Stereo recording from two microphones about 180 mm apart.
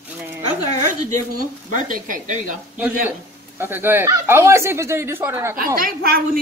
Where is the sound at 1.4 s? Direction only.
50° right (ahead or behind).